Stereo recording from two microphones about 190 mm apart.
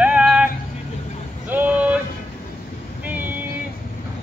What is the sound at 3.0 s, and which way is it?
Vehicle, 10° right (ahead or behind).